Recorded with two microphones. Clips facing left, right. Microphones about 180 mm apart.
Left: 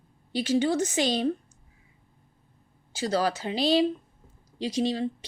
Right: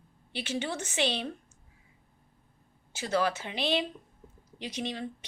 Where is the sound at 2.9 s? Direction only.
35° left (ahead or behind).